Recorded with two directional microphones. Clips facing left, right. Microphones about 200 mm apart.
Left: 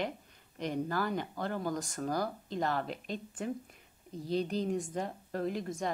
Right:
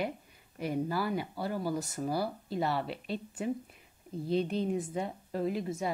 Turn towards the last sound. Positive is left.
turn(degrees=-5)  # may be behind; listen again after turning